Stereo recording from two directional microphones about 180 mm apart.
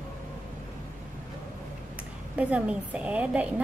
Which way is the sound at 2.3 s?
5° right (ahead or behind).